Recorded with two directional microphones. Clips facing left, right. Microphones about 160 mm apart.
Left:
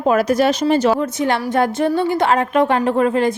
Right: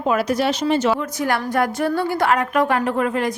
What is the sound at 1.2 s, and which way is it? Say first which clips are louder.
A woman's voice: left 1 dB; 25° left (ahead or behind).